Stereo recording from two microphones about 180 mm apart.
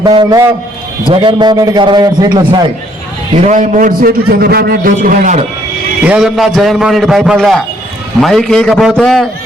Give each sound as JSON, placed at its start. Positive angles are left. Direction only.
{"t": 0.0, "sound": "a man's voice", "side_deg": -25}
{"t": 3.4, "sound": "a man's voice", "side_deg": -45}
{"t": 6.1, "sound": "a man's voice", "side_deg": -5}